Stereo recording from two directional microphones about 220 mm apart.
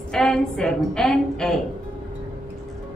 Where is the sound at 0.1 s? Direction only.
5° left (ahead or behind).